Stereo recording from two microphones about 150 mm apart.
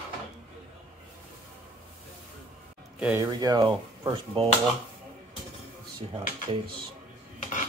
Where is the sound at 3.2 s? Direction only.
25° right (ahead or behind).